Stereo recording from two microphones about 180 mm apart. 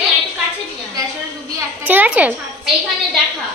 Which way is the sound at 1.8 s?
10° right (ahead or behind).